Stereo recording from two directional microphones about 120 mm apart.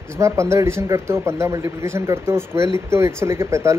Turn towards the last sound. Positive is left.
turn(degrees=-25)  # may be behind; listen again after turning